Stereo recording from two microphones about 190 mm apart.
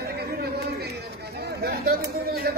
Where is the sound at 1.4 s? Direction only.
55° right (ahead or behind).